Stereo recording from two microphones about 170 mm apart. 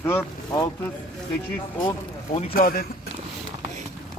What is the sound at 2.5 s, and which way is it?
Speech, 60° left (ahead or behind).